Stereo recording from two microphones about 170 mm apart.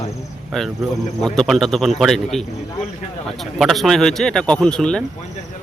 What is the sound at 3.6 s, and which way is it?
Speech, centre (ahead or behind).